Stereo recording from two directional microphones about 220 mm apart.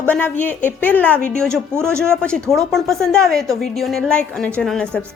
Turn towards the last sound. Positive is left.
turn(degrees=5)  # may be behind; listen again after turning